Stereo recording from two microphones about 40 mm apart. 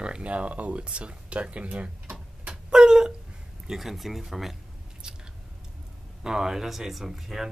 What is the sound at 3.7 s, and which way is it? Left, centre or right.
Speech, centre.